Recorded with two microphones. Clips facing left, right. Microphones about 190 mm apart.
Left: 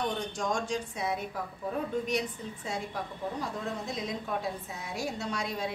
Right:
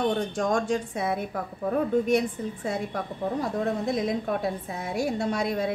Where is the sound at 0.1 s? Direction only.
55° right (ahead or behind).